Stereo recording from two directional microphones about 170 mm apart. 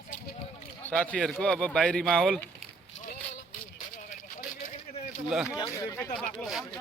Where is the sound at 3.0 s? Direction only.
50° left (ahead or behind).